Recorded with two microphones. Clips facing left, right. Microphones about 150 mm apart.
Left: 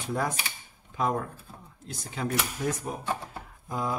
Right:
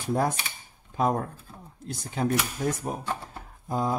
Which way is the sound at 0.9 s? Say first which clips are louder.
Right 3 dB; 40° right (ahead or behind).